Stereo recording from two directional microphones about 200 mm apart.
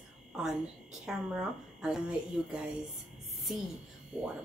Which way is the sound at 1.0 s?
Centre (ahead or behind).